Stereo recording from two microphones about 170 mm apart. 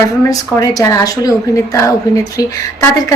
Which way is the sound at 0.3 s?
20° left (ahead or behind).